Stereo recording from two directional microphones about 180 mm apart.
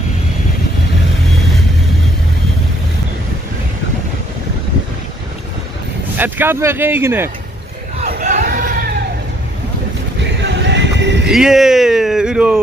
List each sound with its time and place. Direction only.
6.1 s speech: 10° right (ahead or behind)
8.0 s crowd: 45° right (ahead or behind)
10.4 s music: 75° right (ahead or behind)
11.2 s speech: 5° right (ahead or behind)